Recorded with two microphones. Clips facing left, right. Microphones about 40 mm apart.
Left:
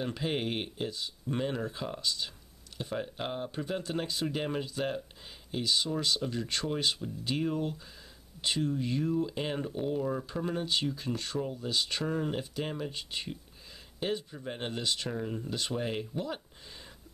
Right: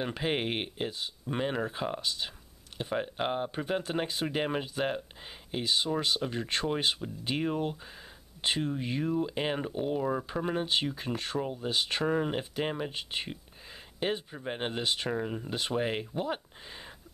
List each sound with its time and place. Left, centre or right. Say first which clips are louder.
0.0 s speech: right 2 dB; right